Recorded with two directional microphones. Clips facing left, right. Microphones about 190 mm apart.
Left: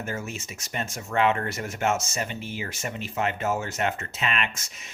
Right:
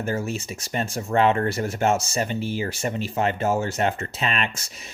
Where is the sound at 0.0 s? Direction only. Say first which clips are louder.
Right 6 dB; 35° right (ahead or behind).